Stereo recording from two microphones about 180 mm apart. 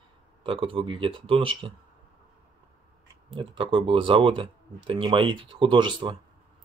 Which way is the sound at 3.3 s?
30° right (ahead or behind).